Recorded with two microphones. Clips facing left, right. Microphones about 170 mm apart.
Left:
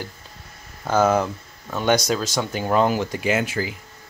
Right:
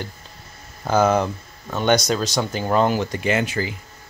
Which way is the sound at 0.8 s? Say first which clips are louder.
Right 1 dB; centre (ahead or behind).